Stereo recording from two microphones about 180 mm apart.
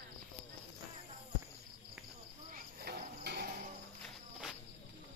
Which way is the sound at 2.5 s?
60° right (ahead or behind).